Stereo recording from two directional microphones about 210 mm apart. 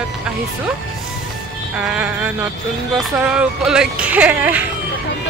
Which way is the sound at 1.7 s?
5° right (ahead or behind).